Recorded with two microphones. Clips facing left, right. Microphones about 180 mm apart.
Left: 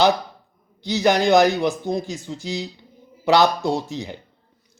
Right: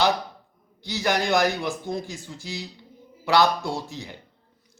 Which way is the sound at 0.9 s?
20° left (ahead or behind).